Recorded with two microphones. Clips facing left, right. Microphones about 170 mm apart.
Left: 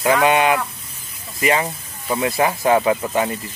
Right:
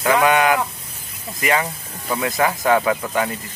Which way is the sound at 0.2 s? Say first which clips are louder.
Even; 25° left (ahead or behind).